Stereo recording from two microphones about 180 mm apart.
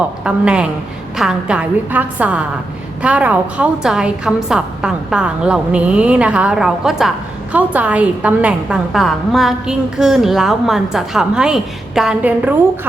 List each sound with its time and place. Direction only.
0.3 s a woman's voice: 5° right (ahead or behind)